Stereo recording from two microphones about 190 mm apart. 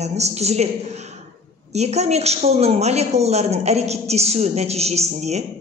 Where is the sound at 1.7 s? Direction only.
35° right (ahead or behind).